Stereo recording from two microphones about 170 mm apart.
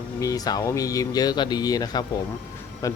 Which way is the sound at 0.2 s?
20° left (ahead or behind).